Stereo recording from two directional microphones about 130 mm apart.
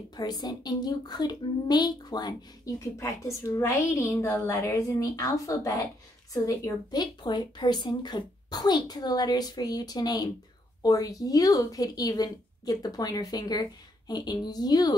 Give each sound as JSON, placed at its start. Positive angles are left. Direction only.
{"t": 0.1, "sound": "a woman's voice", "side_deg": 30}